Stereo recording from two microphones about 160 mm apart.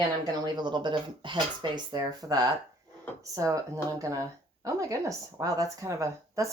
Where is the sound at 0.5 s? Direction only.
30° right (ahead or behind).